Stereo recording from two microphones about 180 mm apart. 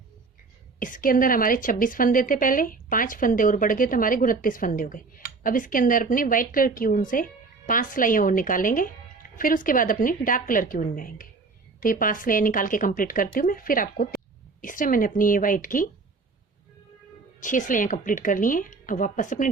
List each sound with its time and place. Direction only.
0.8 s a woman's voice: 50° left (ahead or behind)
17.4 s a woman's voice: 45° left (ahead or behind)